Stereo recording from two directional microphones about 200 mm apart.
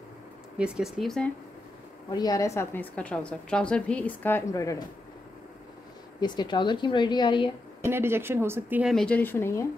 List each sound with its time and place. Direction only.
0.6 s speech: 5° right (ahead or behind)
2.0 s a woman's voice: 20° left (ahead or behind)
6.2 s a woman's voice: 20° left (ahead or behind)
7.8 s speech: 10° right (ahead or behind)
8.9 s a woman's voice: 5° left (ahead or behind)